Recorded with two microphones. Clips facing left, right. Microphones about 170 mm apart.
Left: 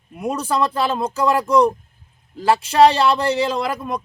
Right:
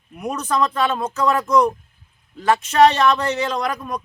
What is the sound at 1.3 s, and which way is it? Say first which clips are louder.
A man's voice: left 1 dB; 30° left (ahead or behind).